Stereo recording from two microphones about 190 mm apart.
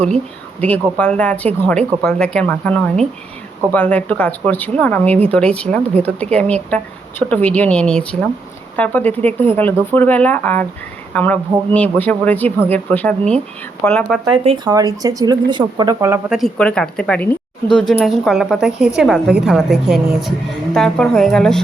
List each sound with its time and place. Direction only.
0.6 s a woman's voice: 5° left (ahead or behind)
14.4 s speech: 25° right (ahead or behind)
16.3 s a woman's voice: 5° left (ahead or behind)